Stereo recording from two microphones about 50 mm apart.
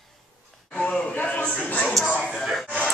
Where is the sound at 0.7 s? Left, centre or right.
Left.